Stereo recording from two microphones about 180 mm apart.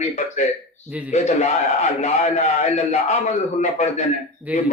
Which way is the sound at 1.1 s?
40° left (ahead or behind).